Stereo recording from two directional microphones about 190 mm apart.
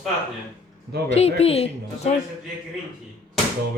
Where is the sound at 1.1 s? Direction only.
35° left (ahead or behind).